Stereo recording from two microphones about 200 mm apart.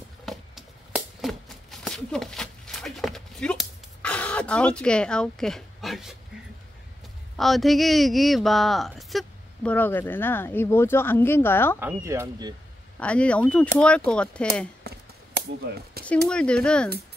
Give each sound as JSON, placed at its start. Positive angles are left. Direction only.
{"t": 0.2, "sound": "shuffling cards", "side_deg": 0}
{"t": 7.3, "sound": "speech", "side_deg": 0}
{"t": 11.8, "sound": "speech", "side_deg": -15}
{"t": 13.0, "sound": "speech", "side_deg": 5}
{"t": 16.0, "sound": "a sound", "side_deg": -50}
{"t": 16.3, "sound": "speech", "side_deg": 5}